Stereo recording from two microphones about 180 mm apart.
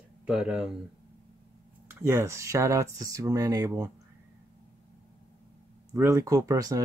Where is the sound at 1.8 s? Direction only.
15° right (ahead or behind).